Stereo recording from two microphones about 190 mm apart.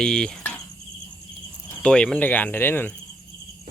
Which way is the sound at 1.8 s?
5° left (ahead or behind).